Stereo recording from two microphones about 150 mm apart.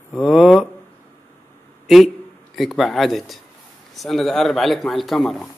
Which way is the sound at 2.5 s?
Centre (ahead or behind).